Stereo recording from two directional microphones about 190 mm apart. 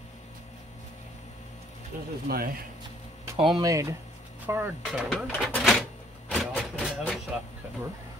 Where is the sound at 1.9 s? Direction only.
45° right (ahead or behind).